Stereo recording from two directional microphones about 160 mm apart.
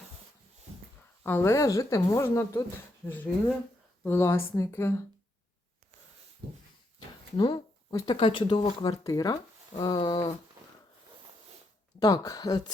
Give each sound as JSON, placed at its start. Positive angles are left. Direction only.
{"t": 1.2, "sound": "speech", "side_deg": 15}
{"t": 4.0, "sound": "speech", "side_deg": 15}
{"t": 7.3, "sound": "speech", "side_deg": 30}
{"t": 9.7, "sound": "a sound", "side_deg": 30}
{"t": 11.9, "sound": "speech", "side_deg": 25}